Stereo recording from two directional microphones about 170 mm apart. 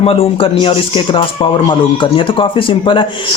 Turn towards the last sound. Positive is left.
turn(degrees=30)  # may be behind; listen again after turning